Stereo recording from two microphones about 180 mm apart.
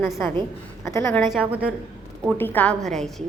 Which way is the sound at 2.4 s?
10° left (ahead or behind).